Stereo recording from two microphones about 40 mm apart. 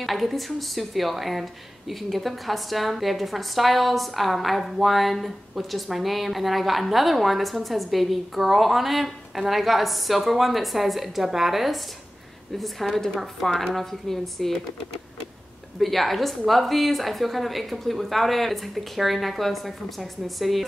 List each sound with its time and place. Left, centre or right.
0.0 s a woman's voice: centre
15.8 s a woman's voice: centre